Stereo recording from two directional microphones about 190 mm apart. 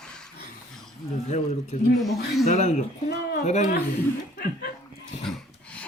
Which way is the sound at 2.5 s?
40° left (ahead or behind).